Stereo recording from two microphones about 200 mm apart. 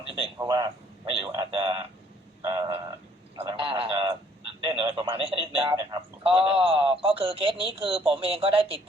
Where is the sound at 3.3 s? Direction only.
20° right (ahead or behind).